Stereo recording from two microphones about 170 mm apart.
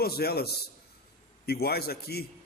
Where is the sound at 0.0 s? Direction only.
70° left (ahead or behind).